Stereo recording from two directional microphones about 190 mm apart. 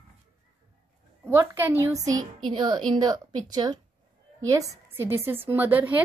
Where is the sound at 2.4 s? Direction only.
25° right (ahead or behind).